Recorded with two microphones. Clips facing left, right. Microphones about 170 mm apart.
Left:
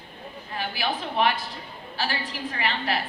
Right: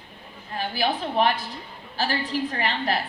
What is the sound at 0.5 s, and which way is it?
Speech, 40° right (ahead or behind).